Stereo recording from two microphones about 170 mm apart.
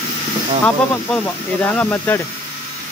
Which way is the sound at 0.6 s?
10° left (ahead or behind).